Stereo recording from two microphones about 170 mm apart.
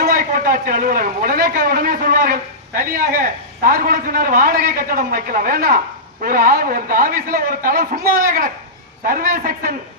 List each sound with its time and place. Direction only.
0.0 s a man's voice: 50° right (ahead or behind)